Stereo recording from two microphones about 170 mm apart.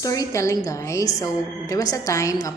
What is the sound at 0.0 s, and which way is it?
A woman's voice, 20° left (ahead or behind).